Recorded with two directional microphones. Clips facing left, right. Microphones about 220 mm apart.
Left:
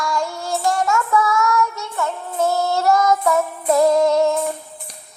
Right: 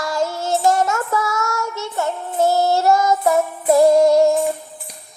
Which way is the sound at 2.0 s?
35° right (ahead or behind).